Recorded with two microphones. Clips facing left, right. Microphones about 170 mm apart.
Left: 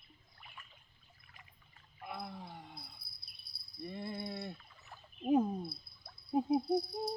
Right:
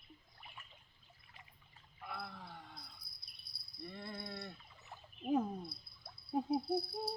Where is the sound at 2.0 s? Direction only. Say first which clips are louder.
Left 3 dB; 15° left (ahead or behind).